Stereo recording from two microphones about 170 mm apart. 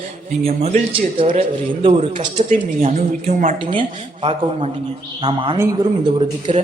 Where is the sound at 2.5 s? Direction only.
45° right (ahead or behind).